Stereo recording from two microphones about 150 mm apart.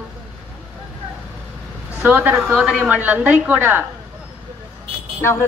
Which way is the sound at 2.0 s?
10° right (ahead or behind).